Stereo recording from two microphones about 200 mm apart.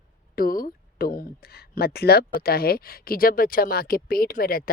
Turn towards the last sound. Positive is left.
turn(degrees=50)  # may be behind; listen again after turning